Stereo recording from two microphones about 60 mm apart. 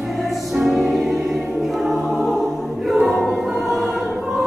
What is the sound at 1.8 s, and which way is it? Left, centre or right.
Choir, centre.